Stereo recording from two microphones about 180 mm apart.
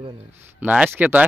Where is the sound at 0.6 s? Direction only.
10° right (ahead or behind).